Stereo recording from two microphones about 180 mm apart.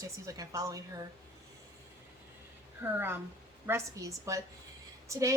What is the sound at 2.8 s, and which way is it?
A woman's voice, 10° right (ahead or behind).